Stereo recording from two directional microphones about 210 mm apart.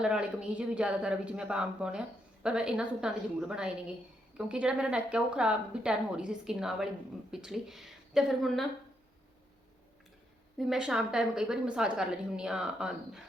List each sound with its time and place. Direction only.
0.0 s speech: 5° right (ahead or behind)
10.6 s speech: 5° right (ahead or behind)